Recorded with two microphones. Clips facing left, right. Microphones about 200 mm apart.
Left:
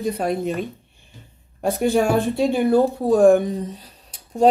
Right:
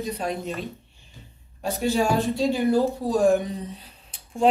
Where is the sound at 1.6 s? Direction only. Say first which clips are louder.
Left 5 dB; 55° left (ahead or behind).